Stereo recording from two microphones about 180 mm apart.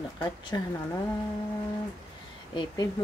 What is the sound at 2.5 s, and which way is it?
Speech, 25° left (ahead or behind).